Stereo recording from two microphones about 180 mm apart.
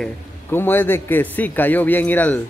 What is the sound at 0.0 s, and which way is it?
A man's voice, 10° left (ahead or behind).